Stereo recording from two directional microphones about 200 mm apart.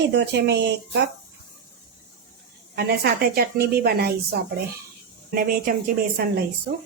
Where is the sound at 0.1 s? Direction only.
60° right (ahead or behind).